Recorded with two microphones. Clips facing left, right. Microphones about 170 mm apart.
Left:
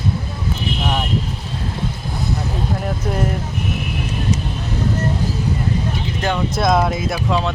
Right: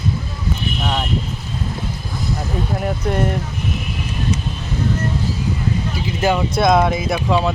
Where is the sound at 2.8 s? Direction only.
Centre (ahead or behind).